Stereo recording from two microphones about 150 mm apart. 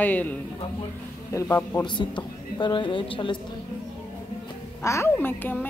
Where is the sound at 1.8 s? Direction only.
30° left (ahead or behind).